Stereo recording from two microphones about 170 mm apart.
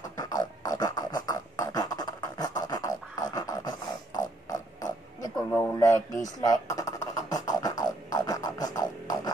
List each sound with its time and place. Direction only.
0.2 s beatboxing: 20° left (ahead or behind)
5.5 s a man's voice: 10° left (ahead or behind)
7.2 s music: 20° left (ahead or behind)